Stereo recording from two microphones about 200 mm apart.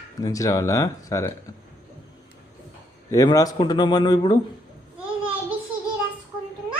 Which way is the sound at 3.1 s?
15° left (ahead or behind).